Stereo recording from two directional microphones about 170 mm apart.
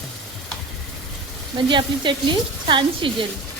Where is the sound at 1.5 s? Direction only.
25° right (ahead or behind).